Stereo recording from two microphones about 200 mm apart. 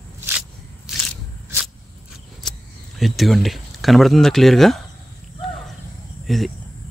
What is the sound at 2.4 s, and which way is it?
Cricket, 5° left (ahead or behind).